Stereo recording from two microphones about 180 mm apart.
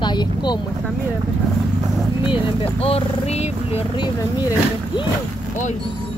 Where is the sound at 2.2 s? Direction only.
30° left (ahead or behind).